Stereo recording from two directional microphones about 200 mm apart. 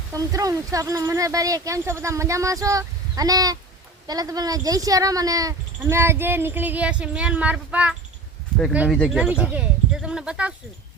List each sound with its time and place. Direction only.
0.1 s speech: 15° right (ahead or behind)